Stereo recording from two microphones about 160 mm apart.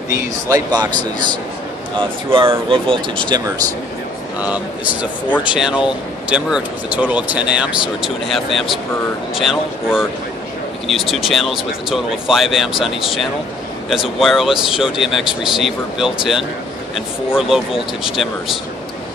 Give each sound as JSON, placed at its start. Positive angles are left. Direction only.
{"t": 0.1, "sound": "speech", "side_deg": -20}
{"t": 2.0, "sound": "speech", "side_deg": -35}
{"t": 5.4, "sound": "speech", "side_deg": -5}